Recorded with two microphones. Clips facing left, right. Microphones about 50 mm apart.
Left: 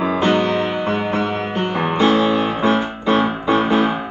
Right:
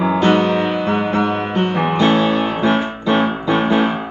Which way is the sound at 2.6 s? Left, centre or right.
Centre.